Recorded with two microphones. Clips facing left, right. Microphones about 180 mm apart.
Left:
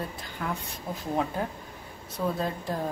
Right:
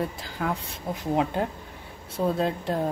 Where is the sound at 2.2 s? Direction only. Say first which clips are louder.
Right 4 dB; 30° right (ahead or behind).